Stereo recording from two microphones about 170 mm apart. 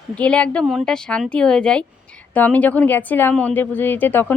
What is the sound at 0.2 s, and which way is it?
Speech, 5° left (ahead or behind).